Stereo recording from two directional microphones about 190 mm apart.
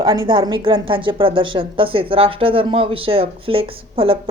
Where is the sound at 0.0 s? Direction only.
20° right (ahead or behind).